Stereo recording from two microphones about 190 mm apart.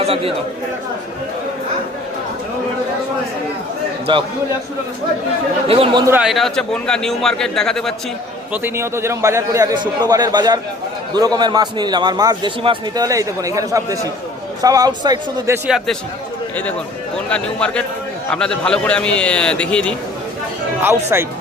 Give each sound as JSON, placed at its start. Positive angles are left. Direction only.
{"t": 0.0, "sound": "speech", "side_deg": -30}
{"t": 5.6, "sound": "a man's voice", "side_deg": -30}
{"t": 6.1, "sound": "speech", "side_deg": -5}
{"t": 8.6, "sound": "a man's voice", "side_deg": -15}
{"t": 17.2, "sound": "speech", "side_deg": 5}
{"t": 21.1, "sound": "a man's voice", "side_deg": -15}